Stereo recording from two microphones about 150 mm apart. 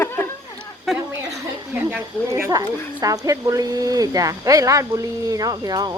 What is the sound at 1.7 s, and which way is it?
Speech, 15° right (ahead or behind).